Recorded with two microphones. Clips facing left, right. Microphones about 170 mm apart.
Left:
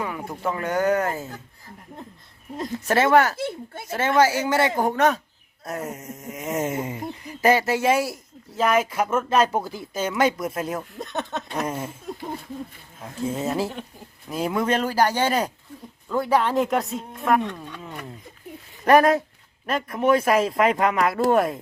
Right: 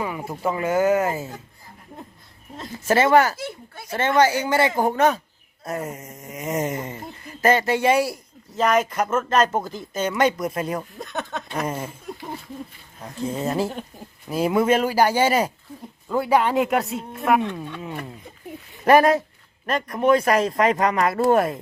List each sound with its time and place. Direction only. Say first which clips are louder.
0.0 s speech: right 2 dB; 5° right (ahead or behind)
2.6 s speech: right 2 dB; centre (ahead or behind)
3.3 s speech: left 4 dB; 25° left (ahead or behind)
3.9 s speech: right 1 dB; 5° left (ahead or behind)